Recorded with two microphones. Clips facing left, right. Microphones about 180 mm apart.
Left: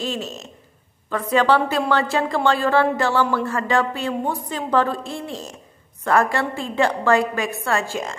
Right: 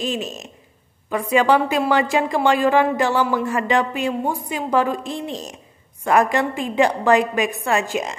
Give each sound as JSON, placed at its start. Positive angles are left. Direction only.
{"t": 0.0, "sound": "a woman's voice", "side_deg": -15}